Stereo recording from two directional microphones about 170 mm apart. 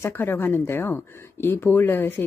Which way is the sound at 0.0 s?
10° left (ahead or behind).